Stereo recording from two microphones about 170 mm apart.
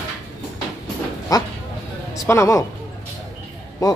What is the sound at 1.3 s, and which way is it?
Speech, 20° left (ahead or behind).